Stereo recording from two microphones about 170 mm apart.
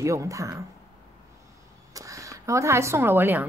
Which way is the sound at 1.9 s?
20° right (ahead or behind).